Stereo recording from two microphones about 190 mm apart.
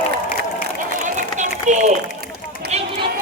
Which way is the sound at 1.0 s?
40° right (ahead or behind).